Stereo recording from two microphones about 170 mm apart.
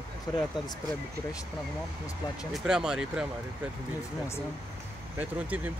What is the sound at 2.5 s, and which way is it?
Speech, 5° right (ahead or behind).